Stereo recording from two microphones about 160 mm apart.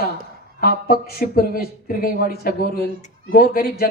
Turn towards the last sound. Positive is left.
turn(degrees=75)  # may be behind; listen again after turning